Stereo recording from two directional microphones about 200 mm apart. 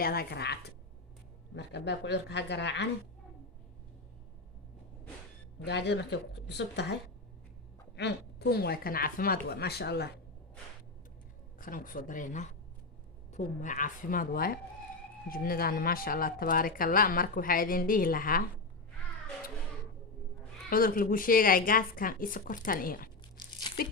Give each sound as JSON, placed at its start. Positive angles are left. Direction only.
{"t": 0.0, "sound": "a woman's voice", "side_deg": 50}
{"t": 5.6, "sound": "a woman's voice", "side_deg": 60}
{"t": 7.9, "sound": "speech", "side_deg": 55}
{"t": 11.5, "sound": "speech", "side_deg": 40}
{"t": 20.7, "sound": "speech", "side_deg": 45}